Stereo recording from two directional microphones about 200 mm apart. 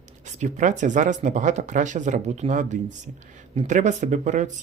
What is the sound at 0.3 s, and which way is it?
Speech, 35° right (ahead or behind).